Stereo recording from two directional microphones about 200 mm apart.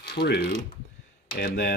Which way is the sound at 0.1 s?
55° left (ahead or behind).